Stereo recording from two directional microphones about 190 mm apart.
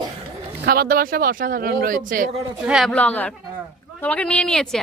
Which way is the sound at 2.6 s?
5° right (ahead or behind).